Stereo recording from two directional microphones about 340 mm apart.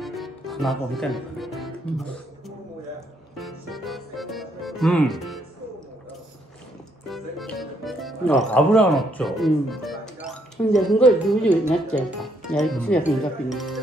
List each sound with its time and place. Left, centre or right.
0.0 s music: centre
3.3 s music: centre
7.1 s speech: centre